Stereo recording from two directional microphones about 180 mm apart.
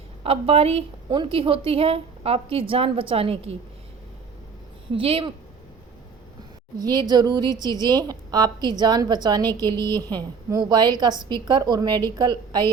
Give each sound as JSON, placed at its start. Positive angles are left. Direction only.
{"t": 0.2, "sound": "a woman's voice", "side_deg": -35}
{"t": 4.9, "sound": "a woman's voice", "side_deg": -30}
{"t": 6.7, "sound": "a woman's voice", "side_deg": -20}